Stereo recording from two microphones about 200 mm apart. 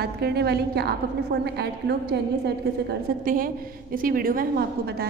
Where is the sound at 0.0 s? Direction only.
55° right (ahead or behind).